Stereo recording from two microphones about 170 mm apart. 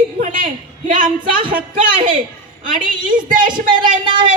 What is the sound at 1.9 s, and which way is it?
A woman's voice, 30° right (ahead or behind).